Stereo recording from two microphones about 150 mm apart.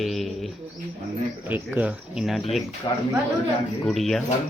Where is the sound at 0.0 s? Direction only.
Centre (ahead or behind).